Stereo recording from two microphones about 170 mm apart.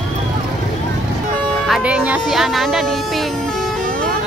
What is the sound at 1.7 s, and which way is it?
Speech, 5° right (ahead or behind).